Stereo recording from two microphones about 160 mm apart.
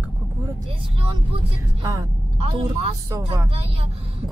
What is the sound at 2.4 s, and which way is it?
Speech, 35° right (ahead or behind).